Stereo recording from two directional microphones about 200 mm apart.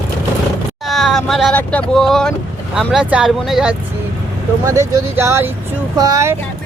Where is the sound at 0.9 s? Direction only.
Centre (ahead or behind).